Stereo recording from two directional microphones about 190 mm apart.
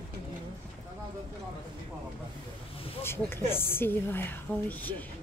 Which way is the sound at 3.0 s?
10° left (ahead or behind).